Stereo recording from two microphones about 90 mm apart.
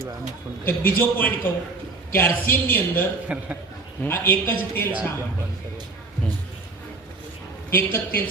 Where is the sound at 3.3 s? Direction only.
15° right (ahead or behind).